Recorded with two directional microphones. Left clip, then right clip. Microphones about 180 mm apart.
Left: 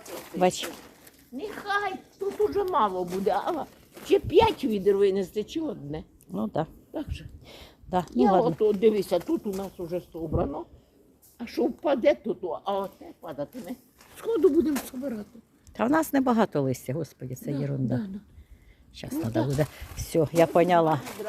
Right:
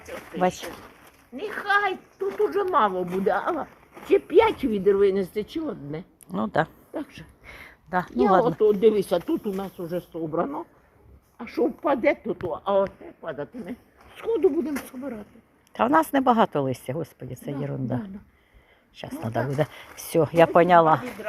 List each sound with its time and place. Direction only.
0.3 s speech: 35° left (ahead or behind)
1.4 s a sound: 45° right (ahead or behind)
3.1 s speech: 35° right (ahead or behind)
6.3 s speech: 5° left (ahead or behind)
6.9 s speech: 35° right (ahead or behind)
7.4 s a sound: 35° left (ahead or behind)
8.4 s speech: 40° right (ahead or behind)
11.3 s a woman's voice: 20° right (ahead or behind)
12.2 s speech: 40° right (ahead or behind)
14.2 s speech: 5° left (ahead or behind)
15.7 s speech: 15° left (ahead or behind)